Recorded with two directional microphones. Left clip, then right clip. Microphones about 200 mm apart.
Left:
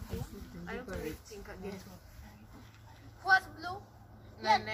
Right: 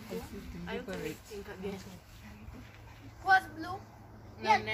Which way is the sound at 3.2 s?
10° left (ahead or behind).